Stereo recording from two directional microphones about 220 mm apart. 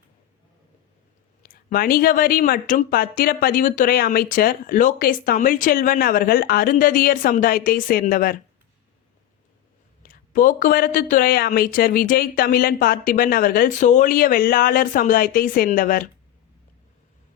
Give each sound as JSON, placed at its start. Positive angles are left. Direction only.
{"t": 1.4, "sound": "speech", "side_deg": 40}
{"t": 10.0, "sound": "speech", "side_deg": 40}